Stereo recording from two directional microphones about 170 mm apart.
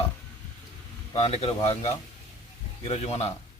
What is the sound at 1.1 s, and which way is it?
A man's voice, 35° left (ahead or behind).